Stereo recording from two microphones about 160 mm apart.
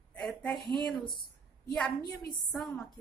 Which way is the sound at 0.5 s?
30° right (ahead or behind).